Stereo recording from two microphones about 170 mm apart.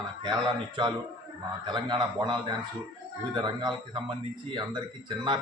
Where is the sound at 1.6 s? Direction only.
25° right (ahead or behind).